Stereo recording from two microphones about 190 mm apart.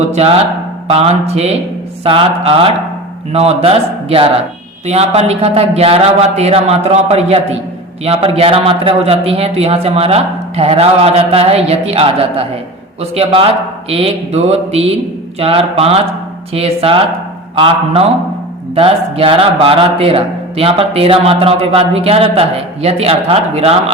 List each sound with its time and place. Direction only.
0.1 s a man's voice: 35° right (ahead or behind)